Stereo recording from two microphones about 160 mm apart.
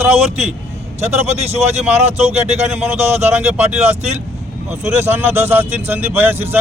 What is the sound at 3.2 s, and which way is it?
Speech, 15° right (ahead or behind).